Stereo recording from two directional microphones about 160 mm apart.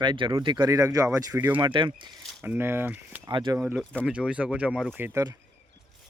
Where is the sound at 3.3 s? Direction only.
25° right (ahead or behind).